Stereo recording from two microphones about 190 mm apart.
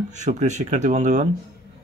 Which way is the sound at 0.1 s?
40° right (ahead or behind).